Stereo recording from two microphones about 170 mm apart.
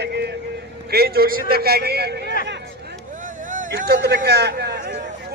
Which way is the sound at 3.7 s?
70° right (ahead or behind).